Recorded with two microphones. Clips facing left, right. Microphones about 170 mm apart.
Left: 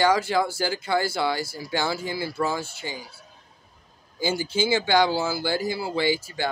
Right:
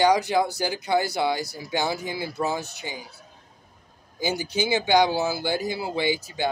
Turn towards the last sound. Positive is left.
turn(degrees=-20)  # may be behind; listen again after turning